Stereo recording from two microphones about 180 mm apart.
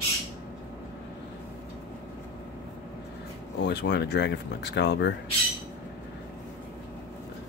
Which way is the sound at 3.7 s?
70° left (ahead or behind).